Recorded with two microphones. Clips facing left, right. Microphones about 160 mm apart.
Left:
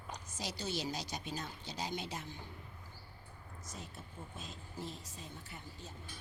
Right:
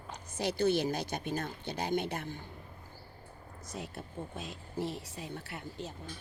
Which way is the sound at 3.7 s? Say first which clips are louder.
Right 9 dB; 70° right (ahead or behind).